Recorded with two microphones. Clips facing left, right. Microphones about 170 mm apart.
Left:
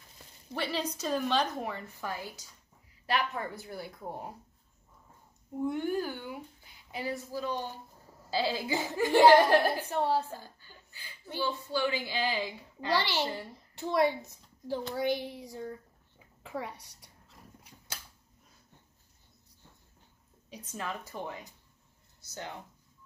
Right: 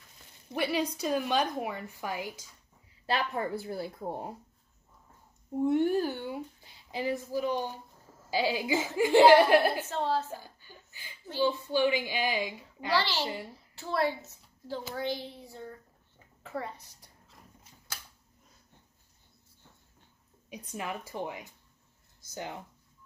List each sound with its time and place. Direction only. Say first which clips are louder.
0.5 s a woman's voice: right 4 dB; 10° right (ahead or behind)
3.1 s speech: right 2 dB; 30° right (ahead or behind)
5.6 s a woman's voice: right 5 dB; 25° right (ahead or behind)
9.7 s speech: left 1 dB; 15° left (ahead or behind)
10.3 s chuckle: right 2 dB; 15° right (ahead or behind)
11.3 s a woman's voice: right 5 dB; 15° right (ahead or behind)
12.9 s speech: right 1 dB; 15° left (ahead or behind)
13.2 s a woman's voice: left 1 dB; 10° right (ahead or behind)
13.7 s a woman's voice: left 3 dB; 15° left (ahead or behind)
20.4 s a woman's voice: right 1 dB; 15° right (ahead or behind)